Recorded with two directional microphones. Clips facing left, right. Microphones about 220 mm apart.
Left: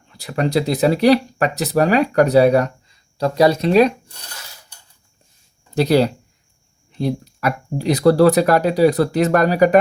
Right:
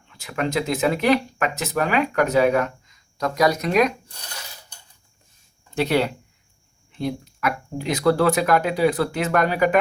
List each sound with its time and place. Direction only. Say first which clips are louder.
0.1 s speech: left 5 dB; 35° left (ahead or behind)
5.7 s speech: left 6 dB; 35° left (ahead or behind)